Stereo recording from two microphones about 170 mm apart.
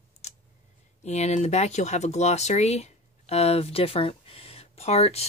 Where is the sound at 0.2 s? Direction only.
40° left (ahead or behind).